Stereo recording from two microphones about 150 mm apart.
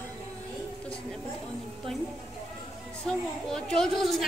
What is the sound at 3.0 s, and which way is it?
A woman's voice, 5° left (ahead or behind).